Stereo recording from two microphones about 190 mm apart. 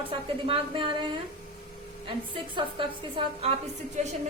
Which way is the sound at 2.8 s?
25° right (ahead or behind).